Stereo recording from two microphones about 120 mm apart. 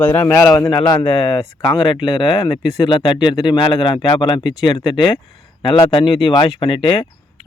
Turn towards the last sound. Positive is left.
turn(degrees=45)  # may be behind; listen again after turning